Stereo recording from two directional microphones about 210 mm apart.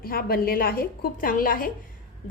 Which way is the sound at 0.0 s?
45° left (ahead or behind).